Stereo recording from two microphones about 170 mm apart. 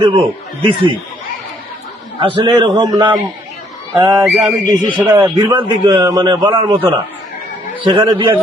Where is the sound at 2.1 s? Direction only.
30° right (ahead or behind).